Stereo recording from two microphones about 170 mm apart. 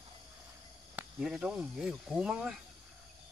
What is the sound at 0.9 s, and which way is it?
Speech, 5° right (ahead or behind).